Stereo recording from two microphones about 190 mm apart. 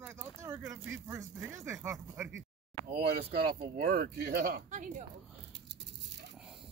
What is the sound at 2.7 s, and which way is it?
Speech, 55° right (ahead or behind).